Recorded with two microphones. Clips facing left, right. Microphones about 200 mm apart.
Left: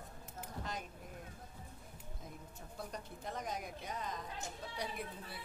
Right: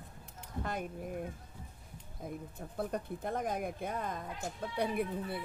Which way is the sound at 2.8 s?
55° right (ahead or behind).